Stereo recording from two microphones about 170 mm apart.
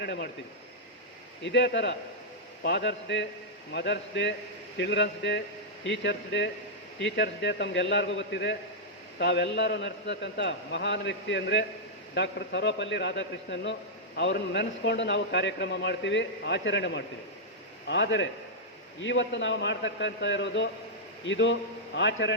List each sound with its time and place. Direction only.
0.0 s speech: 85° left
1.5 s a man's voice: 90° left